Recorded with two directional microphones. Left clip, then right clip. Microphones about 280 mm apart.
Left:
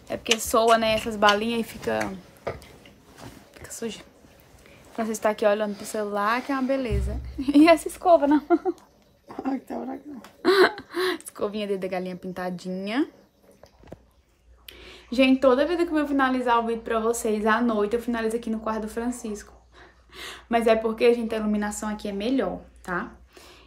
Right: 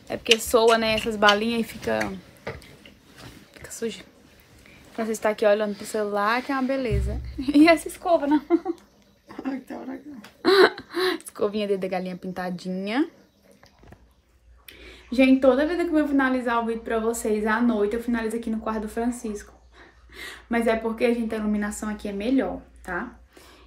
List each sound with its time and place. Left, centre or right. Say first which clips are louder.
0.4 s a woman's voice: left 2 dB; centre
3.6 s a sound: right 3 dB; centre
4.9 s a woman's voice: even; centre
5.7 s speech: right 2 dB; left
5.9 s a woman's voice: right 1 dB; centre; by 9.9 s left
10.4 s speech: right 2 dB; centre
14.7 s a woman's voice: even; centre